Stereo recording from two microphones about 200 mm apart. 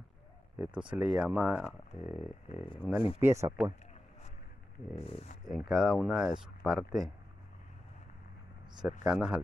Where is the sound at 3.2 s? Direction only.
15° right (ahead or behind).